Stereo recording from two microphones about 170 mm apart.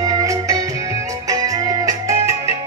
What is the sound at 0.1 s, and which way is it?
Music, 20° right (ahead or behind).